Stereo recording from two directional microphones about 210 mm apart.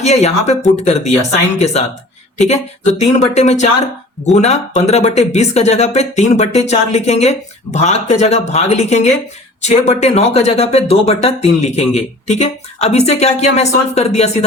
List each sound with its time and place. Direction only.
0.0 s speech: 30° left (ahead or behind)